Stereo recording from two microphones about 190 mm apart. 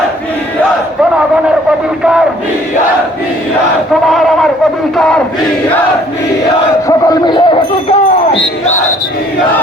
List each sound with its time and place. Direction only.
4.0 s a sound: centre (ahead or behind)
4.9 s battle cry: 5° left (ahead or behind)
6.8 s crowd: 20° left (ahead or behind)